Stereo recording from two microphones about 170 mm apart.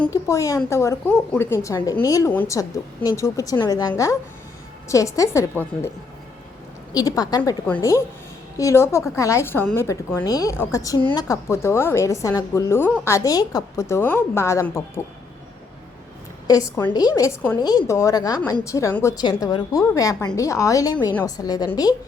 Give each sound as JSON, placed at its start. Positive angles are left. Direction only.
{"t": 0.1, "sound": "a woman's voice", "side_deg": 20}
{"t": 6.9, "sound": "a woman's voice", "side_deg": 20}
{"t": 16.5, "sound": "a woman's voice", "side_deg": 20}